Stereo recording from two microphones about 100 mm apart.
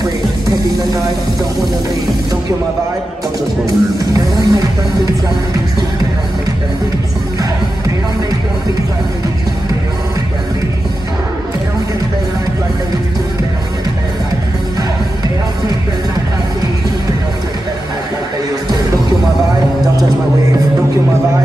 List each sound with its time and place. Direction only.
3.6 s speech: 35° right (ahead or behind)